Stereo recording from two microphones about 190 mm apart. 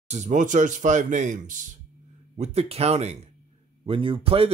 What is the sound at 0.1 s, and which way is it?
Speech, 40° right (ahead or behind).